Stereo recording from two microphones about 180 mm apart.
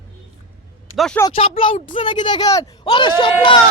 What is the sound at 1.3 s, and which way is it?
A woman's voice, 30° left (ahead or behind).